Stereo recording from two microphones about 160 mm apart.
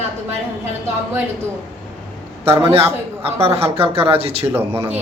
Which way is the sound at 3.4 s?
40° right (ahead or behind).